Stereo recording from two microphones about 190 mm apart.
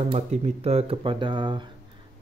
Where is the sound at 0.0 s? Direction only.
35° right (ahead or behind).